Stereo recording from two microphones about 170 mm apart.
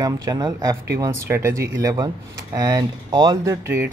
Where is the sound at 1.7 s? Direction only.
20° right (ahead or behind).